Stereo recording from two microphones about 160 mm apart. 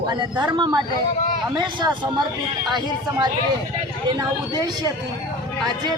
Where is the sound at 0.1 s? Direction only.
25° right (ahead or behind).